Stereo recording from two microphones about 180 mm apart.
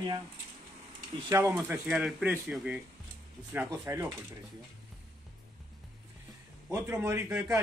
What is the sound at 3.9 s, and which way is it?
Speech, 15° right (ahead or behind).